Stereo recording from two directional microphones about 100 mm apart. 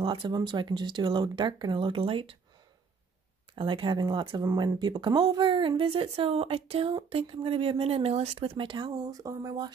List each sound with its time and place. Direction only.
0.0 s speech: 55° right (ahead or behind)
3.5 s speech: 55° right (ahead or behind)
7.1 s speech: 75° right (ahead or behind); by 9.7 s 35° right (ahead or behind)